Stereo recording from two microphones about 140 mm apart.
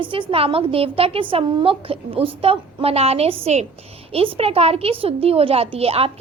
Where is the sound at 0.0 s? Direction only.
35° right (ahead or behind).